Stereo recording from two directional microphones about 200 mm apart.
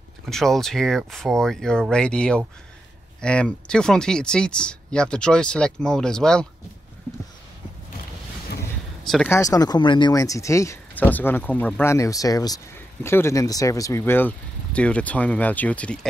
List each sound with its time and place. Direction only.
0.3 s speech: centre (ahead or behind)
9.0 s speech: centre (ahead or behind)
9.3 s speech: 15° left (ahead or behind)